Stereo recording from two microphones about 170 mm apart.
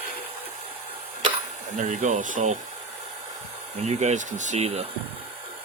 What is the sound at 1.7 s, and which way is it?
Speech, 45° right (ahead or behind).